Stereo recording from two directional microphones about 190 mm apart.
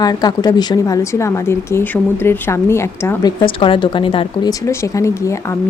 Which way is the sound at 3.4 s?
25° left (ahead or behind).